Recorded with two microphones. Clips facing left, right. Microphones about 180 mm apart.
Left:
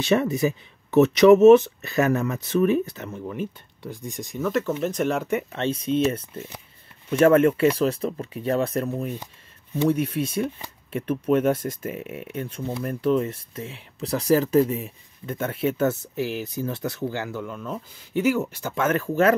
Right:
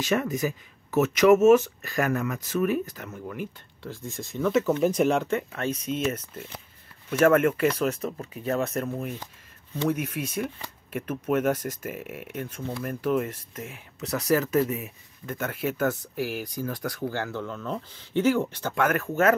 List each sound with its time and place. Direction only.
0.1 s speech: 30° left (ahead or behind)
4.4 s speech: centre (ahead or behind)
5.3 s speech: 25° left (ahead or behind)
11.9 s speech: 5° right (ahead or behind)
13.2 s speech: 30° left (ahead or behind)
17.2 s speech: 10° left (ahead or behind)
18.8 s speech: 25° left (ahead or behind)